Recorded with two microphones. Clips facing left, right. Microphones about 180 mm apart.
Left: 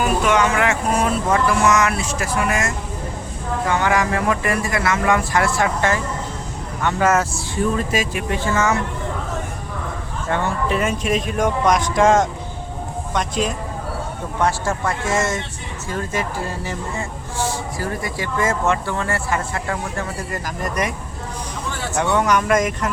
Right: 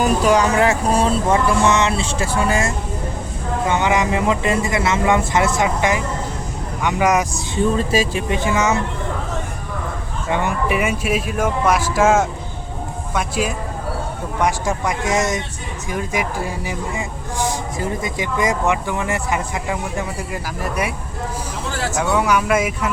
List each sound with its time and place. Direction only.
0.0 s speech: 35° right (ahead or behind)
8.3 s speech: 15° right (ahead or behind)
10.2 s speech: 15° right (ahead or behind)
21.9 s speech: 10° right (ahead or behind)